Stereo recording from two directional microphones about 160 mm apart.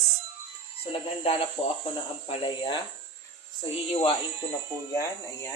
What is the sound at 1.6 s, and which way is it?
Speech, 40° left (ahead or behind).